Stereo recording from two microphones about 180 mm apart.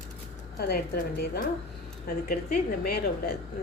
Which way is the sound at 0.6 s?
60° left (ahead or behind).